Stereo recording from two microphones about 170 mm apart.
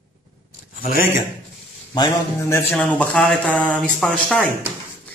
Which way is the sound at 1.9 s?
15° left (ahead or behind).